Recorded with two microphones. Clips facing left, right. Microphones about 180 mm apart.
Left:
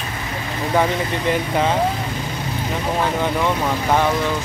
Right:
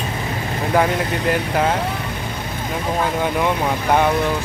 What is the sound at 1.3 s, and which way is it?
Speech, 5° right (ahead or behind).